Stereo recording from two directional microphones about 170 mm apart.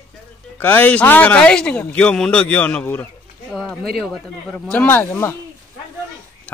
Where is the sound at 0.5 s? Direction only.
10° left (ahead or behind).